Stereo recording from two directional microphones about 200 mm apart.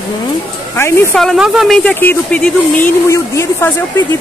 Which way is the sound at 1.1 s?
Centre (ahead or behind).